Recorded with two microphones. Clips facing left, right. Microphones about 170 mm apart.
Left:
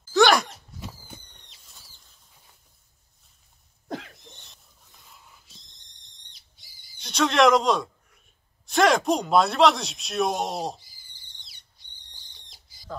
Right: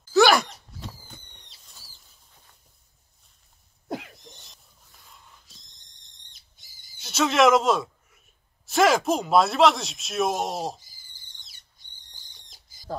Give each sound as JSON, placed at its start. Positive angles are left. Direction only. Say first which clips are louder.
{"t": 0.1, "sound": "a sound", "louder": "right 1 dB", "side_deg": 0}
{"t": 1.7, "sound": "bird flight", "louder": "even", "side_deg": 0}
{"t": 4.3, "sound": "a sound", "louder": "right 1 dB", "side_deg": 0}
{"t": 6.3, "sound": "owl", "louder": "left 1 dB", "side_deg": -45}
{"t": 7.0, "sound": "a man's voice", "louder": "even", "side_deg": -5}
{"t": 10.8, "sound": "owl", "louder": "even", "side_deg": -45}